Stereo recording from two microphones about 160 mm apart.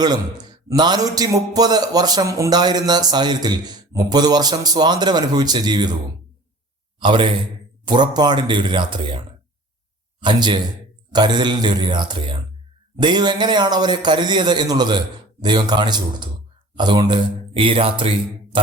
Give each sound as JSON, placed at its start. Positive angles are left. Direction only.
{"t": 0.0, "sound": "a man's voice", "side_deg": -25}
{"t": 7.0, "sound": "a man's voice", "side_deg": -30}